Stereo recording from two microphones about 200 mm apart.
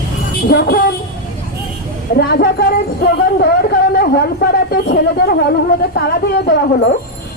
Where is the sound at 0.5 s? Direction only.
50° left (ahead or behind).